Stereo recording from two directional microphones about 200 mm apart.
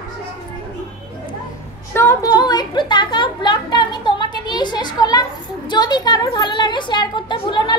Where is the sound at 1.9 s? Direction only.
15° left (ahead or behind).